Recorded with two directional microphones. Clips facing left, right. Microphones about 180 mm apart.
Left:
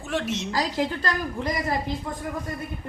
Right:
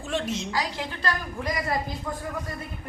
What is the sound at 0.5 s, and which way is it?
Speech, 40° left (ahead or behind).